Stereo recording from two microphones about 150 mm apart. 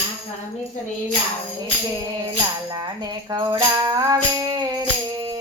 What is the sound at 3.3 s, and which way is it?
Music, 25° right (ahead or behind).